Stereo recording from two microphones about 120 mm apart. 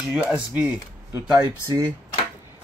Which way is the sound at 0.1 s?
10° right (ahead or behind).